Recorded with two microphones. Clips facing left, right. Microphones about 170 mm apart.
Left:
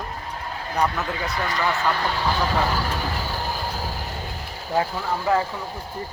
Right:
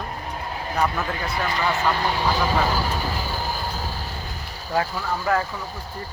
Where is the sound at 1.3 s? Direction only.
20° right (ahead or behind).